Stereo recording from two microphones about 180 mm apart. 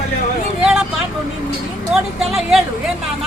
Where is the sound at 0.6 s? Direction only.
5° right (ahead or behind).